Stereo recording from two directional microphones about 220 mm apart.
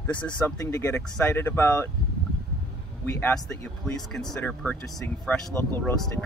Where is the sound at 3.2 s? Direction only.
5° left (ahead or behind).